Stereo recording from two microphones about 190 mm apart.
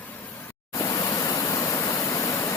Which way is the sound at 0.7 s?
20° left (ahead or behind).